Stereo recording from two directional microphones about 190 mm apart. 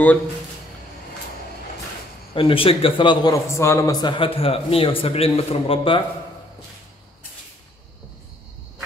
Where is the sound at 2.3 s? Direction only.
30° left (ahead or behind).